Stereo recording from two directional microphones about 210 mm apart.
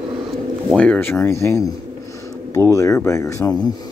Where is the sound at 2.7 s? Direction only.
15° left (ahead or behind).